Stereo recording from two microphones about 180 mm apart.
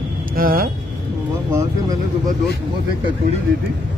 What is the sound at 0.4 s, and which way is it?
Speech, 55° right (ahead or behind).